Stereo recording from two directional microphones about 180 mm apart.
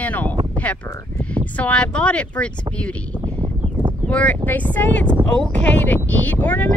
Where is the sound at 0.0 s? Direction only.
10° left (ahead or behind).